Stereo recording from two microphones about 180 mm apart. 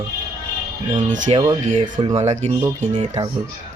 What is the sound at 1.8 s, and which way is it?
Speech, 30° right (ahead or behind).